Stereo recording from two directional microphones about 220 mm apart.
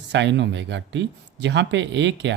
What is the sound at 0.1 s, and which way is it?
Speech, 55° right (ahead or behind).